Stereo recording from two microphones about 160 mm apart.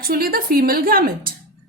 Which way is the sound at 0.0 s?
70° right (ahead or behind).